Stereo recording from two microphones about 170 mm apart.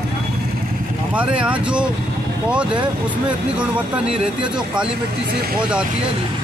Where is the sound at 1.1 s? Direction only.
5° right (ahead or behind).